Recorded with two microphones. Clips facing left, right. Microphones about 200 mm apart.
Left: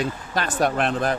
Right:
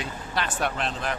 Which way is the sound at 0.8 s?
55° left (ahead or behind).